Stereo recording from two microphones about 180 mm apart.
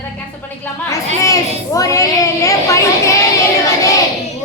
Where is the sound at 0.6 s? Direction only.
15° left (ahead or behind).